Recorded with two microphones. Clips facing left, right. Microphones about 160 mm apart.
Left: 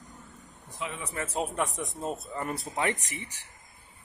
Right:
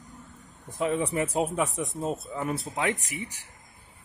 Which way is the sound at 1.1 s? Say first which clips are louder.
Right 5 dB; 15° right (ahead or behind).